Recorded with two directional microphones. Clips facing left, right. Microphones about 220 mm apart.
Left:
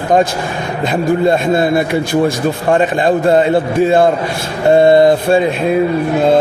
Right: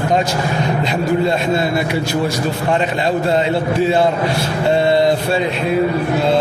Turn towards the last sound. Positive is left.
turn(degrees=50)  # may be behind; listen again after turning